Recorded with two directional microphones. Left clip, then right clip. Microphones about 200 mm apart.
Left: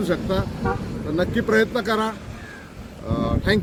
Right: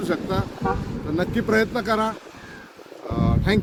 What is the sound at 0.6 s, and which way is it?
Vehicle, 10° right (ahead or behind).